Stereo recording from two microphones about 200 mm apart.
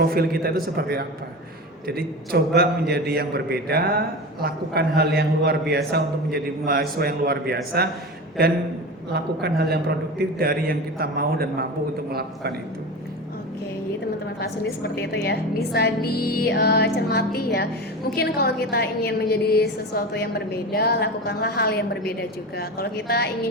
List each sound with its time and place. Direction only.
0.0 s a man's voice: 50° right (ahead or behind)
9.1 s a man's voice: 55° right (ahead or behind)
14.9 s a woman's voice: 55° left (ahead or behind)